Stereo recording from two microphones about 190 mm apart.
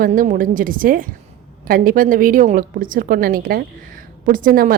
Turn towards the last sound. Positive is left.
turn(degrees=-50)  # may be behind; listen again after turning